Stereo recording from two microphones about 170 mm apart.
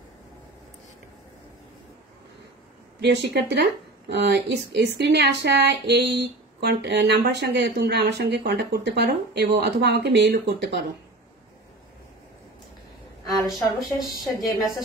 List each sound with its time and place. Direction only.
3.0 s speech: 80° right
13.3 s a woman's voice: centre (ahead or behind)